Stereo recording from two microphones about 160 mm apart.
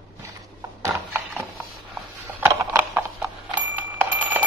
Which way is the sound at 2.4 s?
15° right (ahead or behind).